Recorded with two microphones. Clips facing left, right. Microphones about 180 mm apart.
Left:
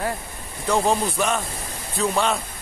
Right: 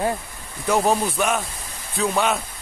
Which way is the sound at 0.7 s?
5° right (ahead or behind).